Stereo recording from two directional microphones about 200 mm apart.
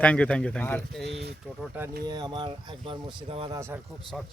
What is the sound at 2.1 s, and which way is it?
Speech, 20° right (ahead or behind).